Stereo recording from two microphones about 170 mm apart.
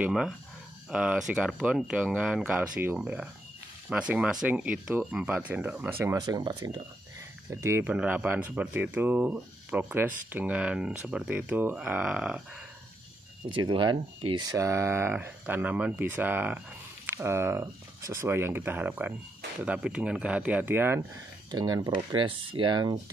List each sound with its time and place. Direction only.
0.0 s speech: 5° right (ahead or behind); by 6.8 s 25° right (ahead or behind)
7.6 s speech: 10° right (ahead or behind)
13.5 s speech: 30° right (ahead or behind); by 21.0 s 10° right (ahead or behind)
21.5 s speech: 25° right (ahead or behind)